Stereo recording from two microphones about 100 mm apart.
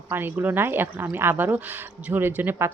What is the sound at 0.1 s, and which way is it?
Speech, 20° right (ahead or behind).